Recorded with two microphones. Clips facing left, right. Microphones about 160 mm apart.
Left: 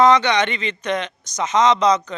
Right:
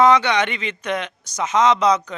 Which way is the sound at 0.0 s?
10° right (ahead or behind).